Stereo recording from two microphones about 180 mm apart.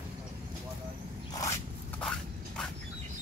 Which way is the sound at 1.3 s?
20° left (ahead or behind).